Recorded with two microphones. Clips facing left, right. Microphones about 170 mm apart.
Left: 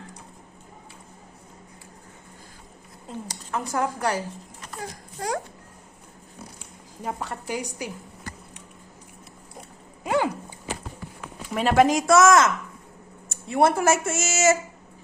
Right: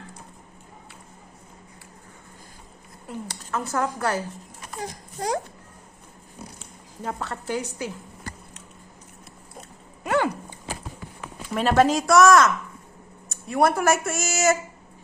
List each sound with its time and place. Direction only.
3.1 s speech: 15° left (ahead or behind)
4.6 s a sound: 20° right (ahead or behind)
7.0 s speech: 15° left (ahead or behind)
9.6 s dog: 15° left (ahead or behind)
11.5 s speech: 15° left (ahead or behind)